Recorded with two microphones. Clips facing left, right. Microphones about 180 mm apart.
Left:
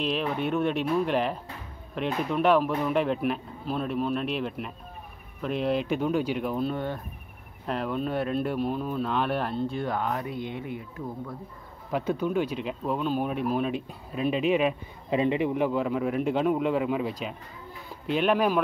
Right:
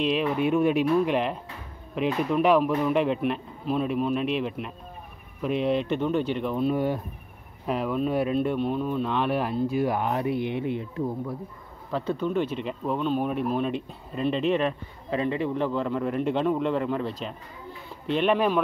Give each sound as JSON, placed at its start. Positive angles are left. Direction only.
{"t": 0.0, "sound": "speech", "side_deg": 0}
{"t": 6.7, "sound": "speech", "side_deg": -10}
{"t": 9.8, "sound": "speech", "side_deg": -20}
{"t": 11.9, "sound": "speech", "side_deg": 15}